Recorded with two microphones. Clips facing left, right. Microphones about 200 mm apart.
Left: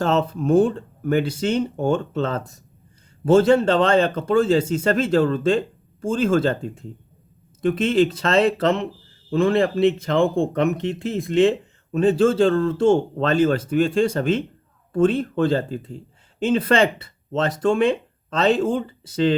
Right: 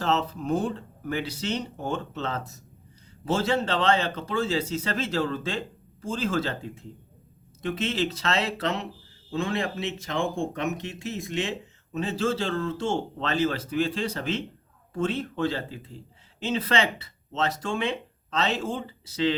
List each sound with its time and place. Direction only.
0.0 s speech: 50° left (ahead or behind)
7.6 s speech: 55° left (ahead or behind)